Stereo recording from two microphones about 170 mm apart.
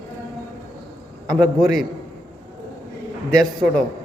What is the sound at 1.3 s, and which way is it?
Speech, centre (ahead or behind).